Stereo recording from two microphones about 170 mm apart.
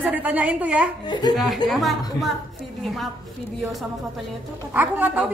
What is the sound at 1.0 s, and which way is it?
Speech, 25° left (ahead or behind).